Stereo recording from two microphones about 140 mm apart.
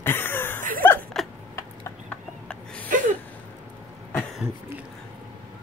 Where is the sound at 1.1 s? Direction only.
Centre (ahead or behind).